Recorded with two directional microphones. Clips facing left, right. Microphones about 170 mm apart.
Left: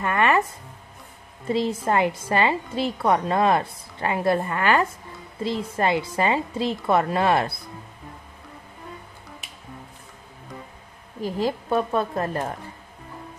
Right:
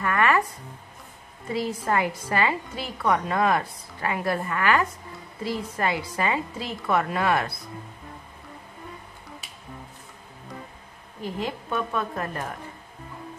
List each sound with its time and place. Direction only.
0.0 s music: 25° left (ahead or behind)
1.5 s a woman's voice: 25° left (ahead or behind)
11.2 s speech: 35° left (ahead or behind)